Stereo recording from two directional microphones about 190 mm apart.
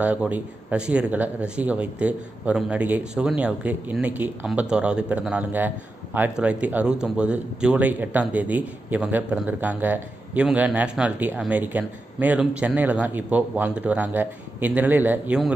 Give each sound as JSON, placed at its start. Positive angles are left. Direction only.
{"t": 0.0, "sound": "a man's voice", "side_deg": -5}